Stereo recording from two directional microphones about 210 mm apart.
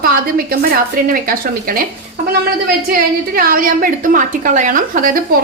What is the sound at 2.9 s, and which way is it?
A woman's voice, 45° right (ahead or behind).